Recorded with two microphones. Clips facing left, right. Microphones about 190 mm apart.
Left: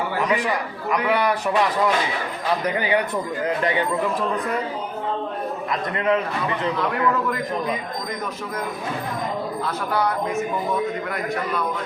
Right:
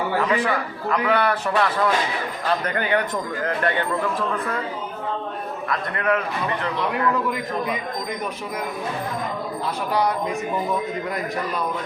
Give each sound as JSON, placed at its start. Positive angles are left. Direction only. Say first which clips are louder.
{"t": 0.2, "sound": "a man's voice", "louder": "left 1 dB", "side_deg": 15}
{"t": 5.7, "sound": "a man's voice", "louder": "left 1 dB", "side_deg": 20}